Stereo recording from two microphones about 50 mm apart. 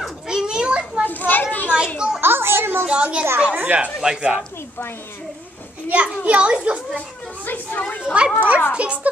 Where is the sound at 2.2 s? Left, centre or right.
Right.